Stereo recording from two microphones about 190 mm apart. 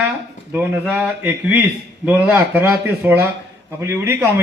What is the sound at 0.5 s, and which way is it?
A man's voice, 10° right (ahead or behind).